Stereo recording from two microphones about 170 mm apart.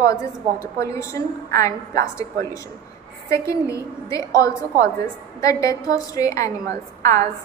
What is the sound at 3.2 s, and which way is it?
A woman's voice, 15° left (ahead or behind).